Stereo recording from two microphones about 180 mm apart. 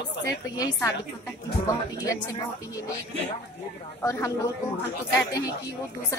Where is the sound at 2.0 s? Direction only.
20° left (ahead or behind).